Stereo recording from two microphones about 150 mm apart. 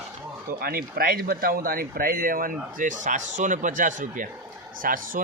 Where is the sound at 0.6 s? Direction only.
80° right.